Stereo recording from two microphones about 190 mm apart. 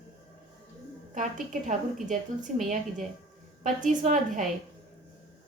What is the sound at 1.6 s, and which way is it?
A woman's voice, 40° right (ahead or behind).